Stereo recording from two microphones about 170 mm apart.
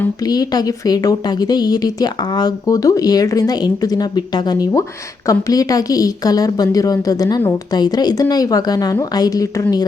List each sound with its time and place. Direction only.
0.3 s speech: 25° left (ahead or behind)